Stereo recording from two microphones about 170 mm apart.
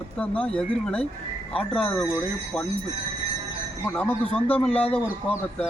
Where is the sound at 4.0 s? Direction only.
5° left (ahead or behind).